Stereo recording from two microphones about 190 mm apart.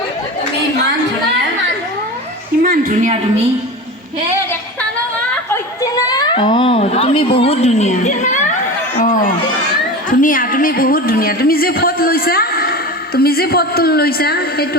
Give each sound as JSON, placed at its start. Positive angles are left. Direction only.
{"t": 2.6, "sound": "a woman's voice", "side_deg": -45}
{"t": 5.8, "sound": "a child's voice", "side_deg": 20}
{"t": 9.0, "sound": "a sound", "side_deg": 45}
{"t": 10.1, "sound": "a woman's voice", "side_deg": 45}